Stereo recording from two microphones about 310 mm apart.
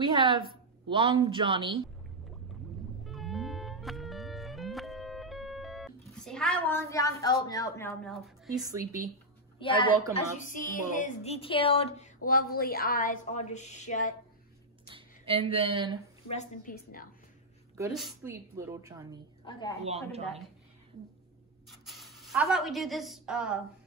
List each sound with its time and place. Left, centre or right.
0.0 s a woman's voice: centre
3.1 s music: centre
7.4 s speech: centre
8.7 s a woman's voice: centre
9.6 s a woman's voice: centre
12.3 s a woman's voice: left
14.9 s speech: centre
16.3 s a woman's voice: left
17.7 s a woman's voice: centre
21.6 s speech: centre